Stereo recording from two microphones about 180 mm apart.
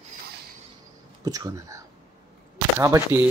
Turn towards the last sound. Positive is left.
turn(degrees=-15)  # may be behind; listen again after turning